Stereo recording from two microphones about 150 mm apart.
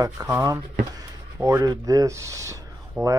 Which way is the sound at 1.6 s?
25° right (ahead or behind).